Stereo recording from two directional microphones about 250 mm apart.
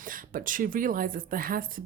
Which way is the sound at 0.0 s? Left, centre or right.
Right.